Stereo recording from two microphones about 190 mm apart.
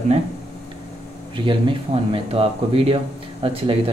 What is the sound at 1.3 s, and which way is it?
Speech, 25° right (ahead or behind).